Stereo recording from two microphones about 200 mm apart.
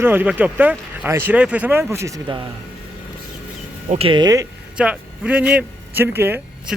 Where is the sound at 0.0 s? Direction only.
10° right (ahead or behind).